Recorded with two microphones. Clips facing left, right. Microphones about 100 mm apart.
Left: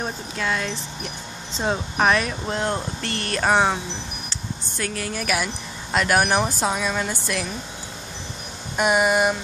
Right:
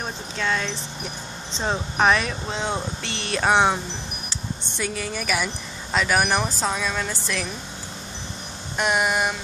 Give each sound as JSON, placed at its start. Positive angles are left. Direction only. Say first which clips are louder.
{"t": 0.0, "sound": "speech", "louder": "left 1 dB", "side_deg": 5}
{"t": 8.7, "sound": "speech", "louder": "left 3 dB", "side_deg": 5}